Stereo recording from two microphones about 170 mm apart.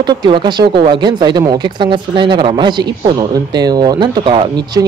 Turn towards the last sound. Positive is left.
turn(degrees=-30)  # may be behind; listen again after turning